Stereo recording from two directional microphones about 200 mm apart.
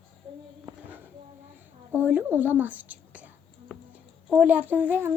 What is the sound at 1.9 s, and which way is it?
Whispering, 10° right (ahead or behind).